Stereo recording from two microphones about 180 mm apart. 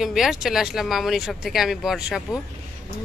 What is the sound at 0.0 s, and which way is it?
Speech, centre (ahead or behind).